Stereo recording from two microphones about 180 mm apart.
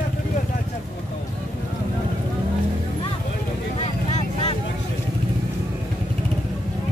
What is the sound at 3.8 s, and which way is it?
Vehicle, 35° left (ahead or behind).